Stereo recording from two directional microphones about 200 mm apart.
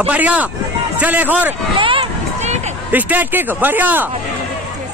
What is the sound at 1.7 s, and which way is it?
Run, 25° right (ahead or behind).